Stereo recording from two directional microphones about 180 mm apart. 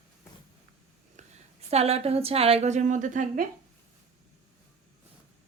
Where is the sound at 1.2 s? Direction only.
40° right (ahead or behind).